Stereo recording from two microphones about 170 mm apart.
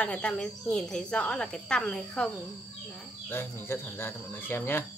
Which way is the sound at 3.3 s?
15° left (ahead or behind).